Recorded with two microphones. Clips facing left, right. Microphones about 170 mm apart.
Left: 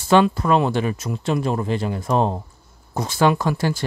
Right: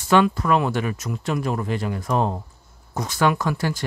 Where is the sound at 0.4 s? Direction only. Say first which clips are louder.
Left 2 dB; 30° left (ahead or behind).